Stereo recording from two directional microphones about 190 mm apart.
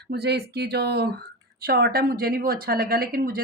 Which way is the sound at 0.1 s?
60° right (ahead or behind).